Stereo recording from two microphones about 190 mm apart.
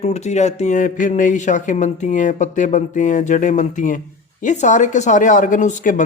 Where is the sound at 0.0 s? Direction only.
35° left (ahead or behind).